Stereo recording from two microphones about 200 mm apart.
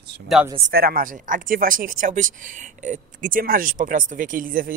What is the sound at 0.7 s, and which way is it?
Speech, 50° right (ahead or behind).